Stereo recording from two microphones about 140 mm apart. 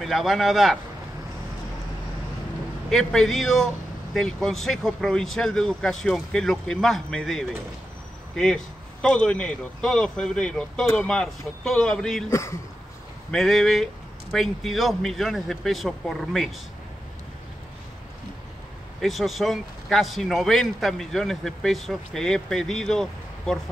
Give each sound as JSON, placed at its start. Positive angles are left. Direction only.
{"t": 0.0, "sound": "a man's voice", "side_deg": 0}
{"t": 2.9, "sound": "a man's voice", "side_deg": 0}
{"t": 12.3, "sound": "speech", "side_deg": 20}
{"t": 13.3, "sound": "a man's voice", "side_deg": 0}
{"t": 18.9, "sound": "a man's voice", "side_deg": 0}